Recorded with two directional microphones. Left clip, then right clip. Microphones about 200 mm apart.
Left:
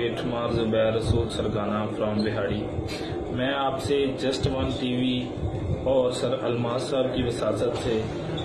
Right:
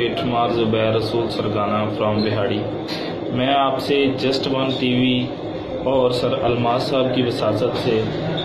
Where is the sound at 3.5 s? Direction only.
Centre (ahead or behind).